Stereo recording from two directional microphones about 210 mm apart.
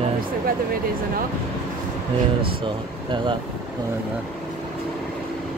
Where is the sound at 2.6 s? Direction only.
25° right (ahead or behind).